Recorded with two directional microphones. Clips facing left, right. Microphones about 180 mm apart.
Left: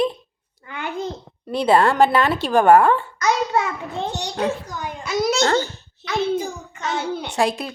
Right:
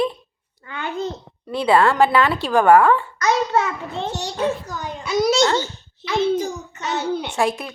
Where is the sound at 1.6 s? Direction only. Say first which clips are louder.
Even; 40° left (ahead or behind).